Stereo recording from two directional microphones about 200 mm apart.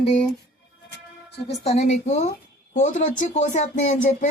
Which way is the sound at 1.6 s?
35° left (ahead or behind).